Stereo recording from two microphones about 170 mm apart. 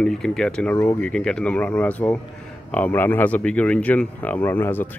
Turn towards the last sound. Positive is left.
turn(degrees=10)  # may be behind; listen again after turning